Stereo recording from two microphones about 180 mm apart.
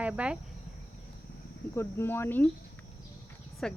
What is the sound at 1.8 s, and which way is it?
Speech, 15° left (ahead or behind).